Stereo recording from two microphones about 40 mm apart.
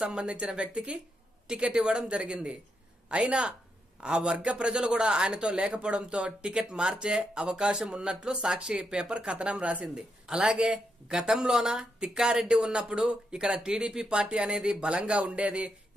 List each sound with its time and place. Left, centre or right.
0.0 s speech: right